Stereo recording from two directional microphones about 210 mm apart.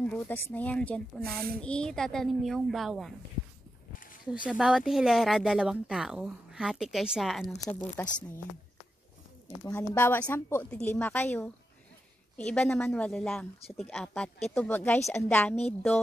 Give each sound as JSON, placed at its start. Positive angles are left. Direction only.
{"t": 0.0, "sound": "speech", "side_deg": 5}
{"t": 4.5, "sound": "speech", "side_deg": -5}
{"t": 7.6, "sound": "a woman's voice", "side_deg": 10}
{"t": 9.7, "sound": "a woman's voice", "side_deg": 10}